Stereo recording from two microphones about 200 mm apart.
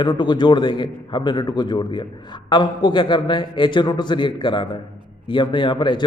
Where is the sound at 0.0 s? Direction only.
25° left (ahead or behind).